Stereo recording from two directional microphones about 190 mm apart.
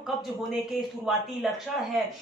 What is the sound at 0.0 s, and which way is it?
Speech, centre (ahead or behind).